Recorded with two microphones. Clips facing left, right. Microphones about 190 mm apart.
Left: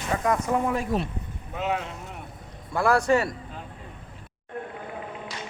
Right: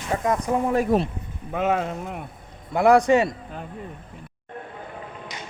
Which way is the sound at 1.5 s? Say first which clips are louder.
Right 6 dB; 50° right (ahead or behind).